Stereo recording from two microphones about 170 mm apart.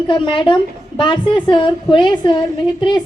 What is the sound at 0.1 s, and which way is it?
A woman's voice, 30° left (ahead or behind).